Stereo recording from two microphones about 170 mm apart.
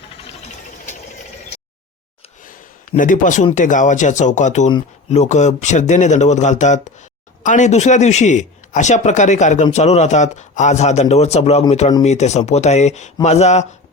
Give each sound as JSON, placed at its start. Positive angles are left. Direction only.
{"t": 2.4, "sound": "speech", "side_deg": 50}